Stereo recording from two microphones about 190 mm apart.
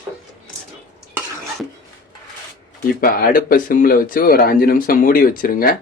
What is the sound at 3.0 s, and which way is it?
Speech, 50° left (ahead or behind).